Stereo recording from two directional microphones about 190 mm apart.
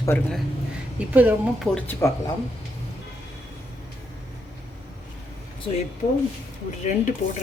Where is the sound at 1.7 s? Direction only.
10° left (ahead or behind).